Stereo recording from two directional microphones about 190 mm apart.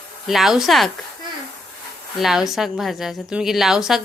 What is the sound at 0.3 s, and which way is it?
Speech, centre (ahead or behind).